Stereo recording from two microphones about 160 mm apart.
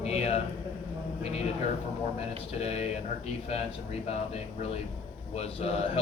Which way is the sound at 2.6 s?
40° left (ahead or behind).